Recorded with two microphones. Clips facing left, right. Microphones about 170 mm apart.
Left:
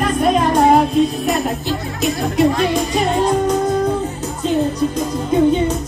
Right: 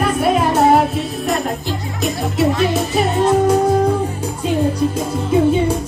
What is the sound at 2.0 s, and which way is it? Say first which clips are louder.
Music: left 2 dB; 5° right (ahead or behind).